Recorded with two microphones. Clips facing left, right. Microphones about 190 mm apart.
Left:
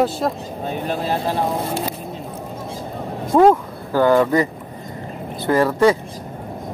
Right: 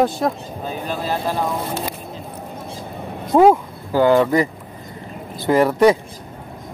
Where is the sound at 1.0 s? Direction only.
25° left (ahead or behind).